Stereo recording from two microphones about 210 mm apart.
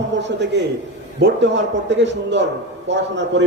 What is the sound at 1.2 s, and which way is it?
Speech, 55° right (ahead or behind).